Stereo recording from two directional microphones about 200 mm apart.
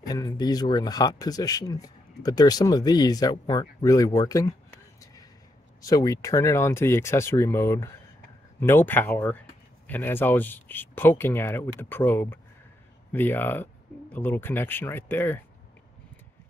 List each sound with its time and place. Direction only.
0.1 s speech: 20° left (ahead or behind)
5.8 s speech: 15° left (ahead or behind)